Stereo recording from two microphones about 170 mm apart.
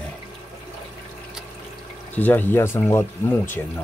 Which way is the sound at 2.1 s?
10° left (ahead or behind).